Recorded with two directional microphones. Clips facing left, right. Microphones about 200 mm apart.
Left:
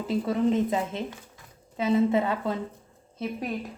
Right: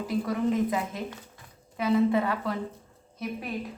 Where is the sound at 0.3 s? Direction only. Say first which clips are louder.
Left 3 dB; 25° left (ahead or behind).